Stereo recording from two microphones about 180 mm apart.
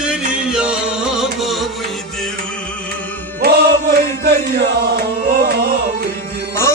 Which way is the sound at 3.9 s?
60° right (ahead or behind).